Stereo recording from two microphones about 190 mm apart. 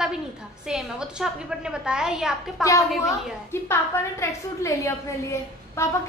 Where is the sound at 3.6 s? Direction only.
15° left (ahead or behind).